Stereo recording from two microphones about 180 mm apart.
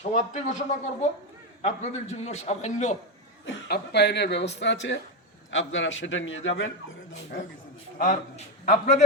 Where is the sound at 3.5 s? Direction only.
65° left (ahead or behind); by 6.7 s 90° left.